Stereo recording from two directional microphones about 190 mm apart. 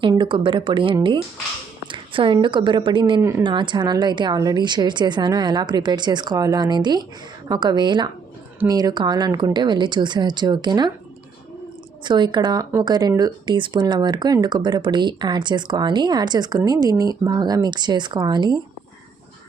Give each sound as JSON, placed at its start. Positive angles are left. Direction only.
{"t": 0.0, "sound": "a woman's voice", "side_deg": -25}
{"t": 3.2, "sound": "speech", "side_deg": -15}
{"t": 3.4, "sound": "speech", "side_deg": -25}
{"t": 12.0, "sound": "speech", "side_deg": -25}